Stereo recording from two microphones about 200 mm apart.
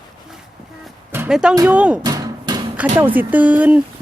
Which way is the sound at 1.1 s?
5° right (ahead or behind).